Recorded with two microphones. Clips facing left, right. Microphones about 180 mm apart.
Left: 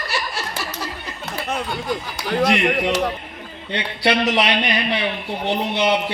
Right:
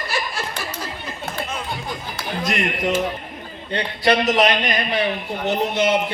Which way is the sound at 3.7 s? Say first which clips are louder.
Right 1 dB; 40° right (ahead or behind).